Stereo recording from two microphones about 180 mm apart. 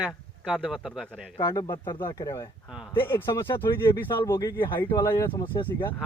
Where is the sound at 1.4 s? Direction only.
20° left (ahead or behind).